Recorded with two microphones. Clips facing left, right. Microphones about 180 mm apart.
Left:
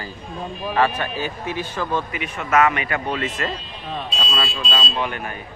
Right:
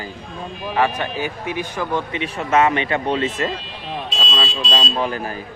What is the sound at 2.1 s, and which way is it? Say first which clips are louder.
Speech: right 2 dB; 35° right (ahead or behind).